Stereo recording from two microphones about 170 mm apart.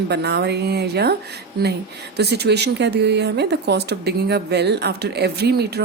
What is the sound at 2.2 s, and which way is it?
A woman's voice, 75° right (ahead or behind).